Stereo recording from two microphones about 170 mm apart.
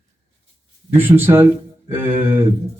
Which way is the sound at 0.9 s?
15° right (ahead or behind).